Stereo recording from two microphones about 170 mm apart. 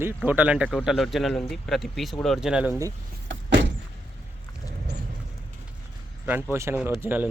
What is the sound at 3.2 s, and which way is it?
Vehicle, 90° right.